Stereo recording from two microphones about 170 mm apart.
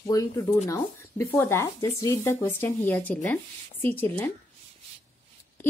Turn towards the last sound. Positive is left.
turn(degrees=10)  # may be behind; listen again after turning